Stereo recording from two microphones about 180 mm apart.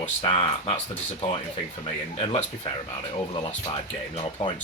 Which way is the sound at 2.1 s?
35° left (ahead or behind).